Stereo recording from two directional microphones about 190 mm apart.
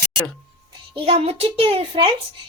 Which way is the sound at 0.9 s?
30° right (ahead or behind).